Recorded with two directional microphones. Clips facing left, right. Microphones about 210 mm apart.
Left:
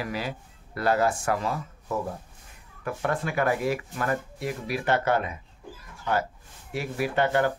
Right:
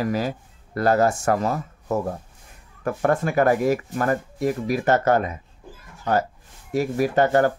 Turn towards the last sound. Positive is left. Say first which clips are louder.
# right 5 dB
turn(degrees=-40)  # may be behind; listen again after turning